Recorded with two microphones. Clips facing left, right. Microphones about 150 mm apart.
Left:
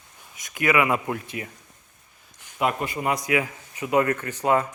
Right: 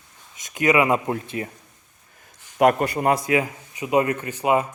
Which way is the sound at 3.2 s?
25° right (ahead or behind).